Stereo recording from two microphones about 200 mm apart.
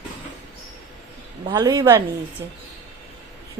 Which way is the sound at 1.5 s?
20° right (ahead or behind).